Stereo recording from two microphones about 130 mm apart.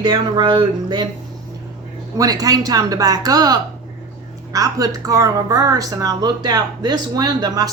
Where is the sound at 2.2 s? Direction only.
25° right (ahead or behind).